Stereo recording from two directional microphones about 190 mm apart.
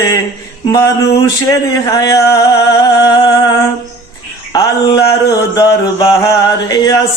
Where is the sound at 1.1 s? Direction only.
15° left (ahead or behind).